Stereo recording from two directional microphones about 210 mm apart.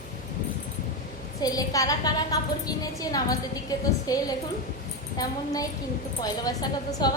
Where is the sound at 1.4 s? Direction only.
15° left (ahead or behind).